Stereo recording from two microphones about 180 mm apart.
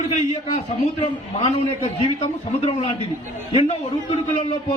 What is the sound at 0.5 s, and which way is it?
A man's voice, 35° left (ahead or behind).